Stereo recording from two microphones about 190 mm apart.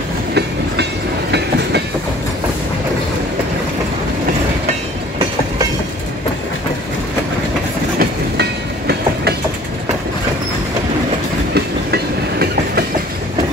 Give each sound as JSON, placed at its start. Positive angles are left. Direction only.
{"t": 8.0, "sound": "train", "side_deg": -55}
{"t": 11.5, "sound": "train", "side_deg": -55}